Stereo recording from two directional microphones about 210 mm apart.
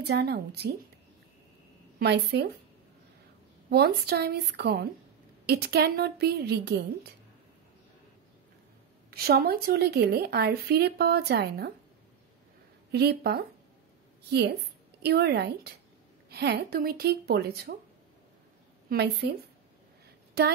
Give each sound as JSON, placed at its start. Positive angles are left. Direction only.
{"t": 0.1, "sound": "speech", "side_deg": -50}
{"t": 2.0, "sound": "speech", "side_deg": -50}
{"t": 3.7, "sound": "speech", "side_deg": -50}
{"t": 9.1, "sound": "speech", "side_deg": -50}
{"t": 12.9, "sound": "a woman's voice", "side_deg": -50}
{"t": 18.9, "sound": "speech", "side_deg": -50}